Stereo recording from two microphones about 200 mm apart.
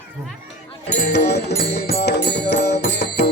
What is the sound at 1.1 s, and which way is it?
Music, 55° left (ahead or behind).